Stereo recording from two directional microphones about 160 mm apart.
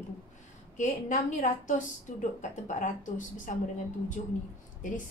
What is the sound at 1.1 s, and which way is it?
A woman's voice, 50° left (ahead or behind).